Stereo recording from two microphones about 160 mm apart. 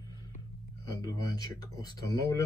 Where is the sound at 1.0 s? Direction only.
25° left (ahead or behind).